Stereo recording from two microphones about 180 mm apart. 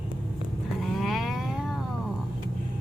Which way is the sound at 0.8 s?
Centre (ahead or behind).